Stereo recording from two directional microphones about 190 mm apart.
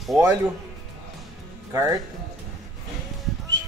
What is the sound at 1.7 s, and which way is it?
Speech, 15° right (ahead or behind).